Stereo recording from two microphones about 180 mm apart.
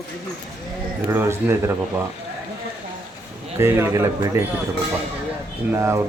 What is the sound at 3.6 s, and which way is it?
Speech, 15° right (ahead or behind).